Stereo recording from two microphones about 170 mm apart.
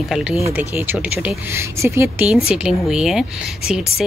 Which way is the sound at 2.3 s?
5° right (ahead or behind).